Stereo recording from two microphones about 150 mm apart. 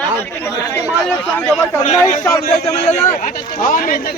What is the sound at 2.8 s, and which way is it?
A man's voice, 50° left (ahead or behind).